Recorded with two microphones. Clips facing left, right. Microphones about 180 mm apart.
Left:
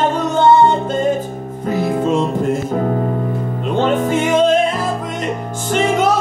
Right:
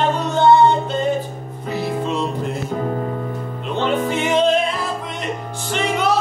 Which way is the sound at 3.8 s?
45° left (ahead or behind).